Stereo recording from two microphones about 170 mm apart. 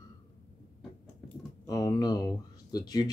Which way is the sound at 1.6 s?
20° left (ahead or behind).